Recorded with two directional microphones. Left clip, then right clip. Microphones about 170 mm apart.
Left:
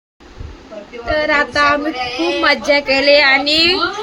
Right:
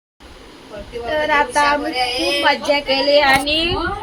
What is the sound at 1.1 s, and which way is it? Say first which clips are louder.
Child singing: left 2 dB; 20° left (ahead or behind).